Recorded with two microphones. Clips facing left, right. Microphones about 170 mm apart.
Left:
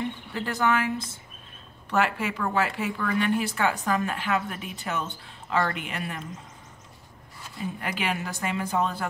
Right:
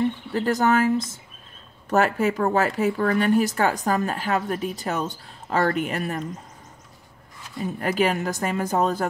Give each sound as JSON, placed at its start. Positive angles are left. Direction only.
{"t": 0.3, "sound": "speech", "side_deg": -40}
{"t": 7.8, "sound": "speech", "side_deg": -40}